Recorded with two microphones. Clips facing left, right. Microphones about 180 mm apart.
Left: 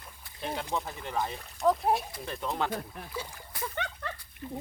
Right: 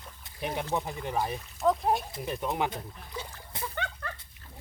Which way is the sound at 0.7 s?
15° right (ahead or behind).